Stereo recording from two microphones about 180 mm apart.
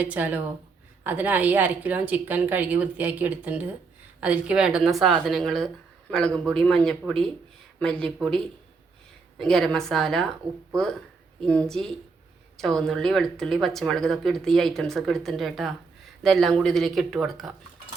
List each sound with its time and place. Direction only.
0.0 s speech: 10° right (ahead or behind)
9.4 s speech: 5° left (ahead or behind)
11.3 s speech: 5° left (ahead or behind)